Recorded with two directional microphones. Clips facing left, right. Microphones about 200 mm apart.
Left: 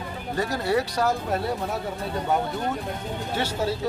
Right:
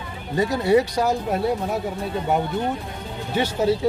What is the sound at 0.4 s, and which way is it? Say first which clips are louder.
Speech: right 6 dB; 15° right (ahead or behind).